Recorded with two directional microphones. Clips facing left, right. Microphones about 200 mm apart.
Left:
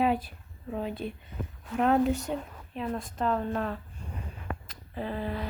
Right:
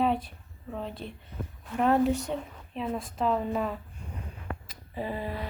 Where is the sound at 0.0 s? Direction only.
5° left (ahead or behind).